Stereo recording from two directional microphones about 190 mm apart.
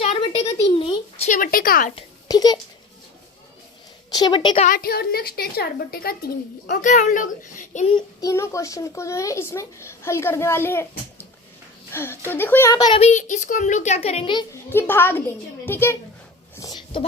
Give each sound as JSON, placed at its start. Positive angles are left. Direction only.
{"t": 0.0, "sound": "a sound", "side_deg": 30}
{"t": 2.2, "sound": "speech", "side_deg": 20}
{"t": 4.1, "sound": "a woman's voice", "side_deg": 25}
{"t": 4.6, "sound": "a child's voice", "side_deg": 50}
{"t": 6.8, "sound": "a woman's voice", "side_deg": 40}
{"t": 7.9, "sound": "a child's voice", "side_deg": 15}
{"t": 13.0, "sound": "a woman's voice", "side_deg": 40}
{"t": 14.5, "sound": "a child's voice", "side_deg": 10}
{"t": 16.6, "sound": "a sound", "side_deg": 20}